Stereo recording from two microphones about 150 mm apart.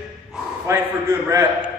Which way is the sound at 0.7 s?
20° right (ahead or behind).